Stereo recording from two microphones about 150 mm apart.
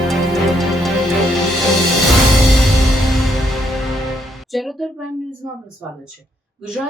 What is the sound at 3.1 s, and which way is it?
Music, centre (ahead or behind).